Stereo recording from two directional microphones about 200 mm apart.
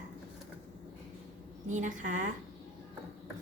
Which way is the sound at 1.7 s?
40° right (ahead or behind).